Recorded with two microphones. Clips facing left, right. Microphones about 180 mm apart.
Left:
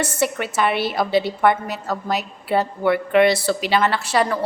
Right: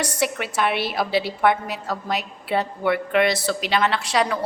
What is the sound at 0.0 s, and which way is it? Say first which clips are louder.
A woman's voice: left 2 dB; 5° left (ahead or behind).